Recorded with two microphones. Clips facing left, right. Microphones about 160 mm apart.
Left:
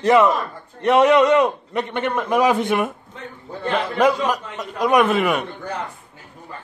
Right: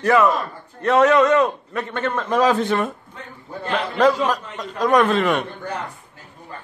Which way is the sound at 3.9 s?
10° left (ahead or behind).